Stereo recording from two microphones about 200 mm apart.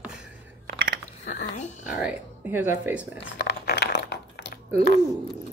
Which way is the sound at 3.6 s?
60° left (ahead or behind).